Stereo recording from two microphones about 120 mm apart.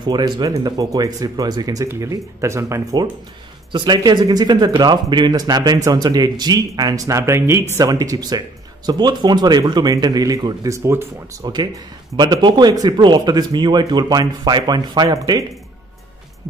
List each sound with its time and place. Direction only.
0.0 s speech: 35° right (ahead or behind)
3.7 s speech: 40° right (ahead or behind); by 11.1 s 20° right (ahead or behind)
11.4 s speech: 35° right (ahead or behind)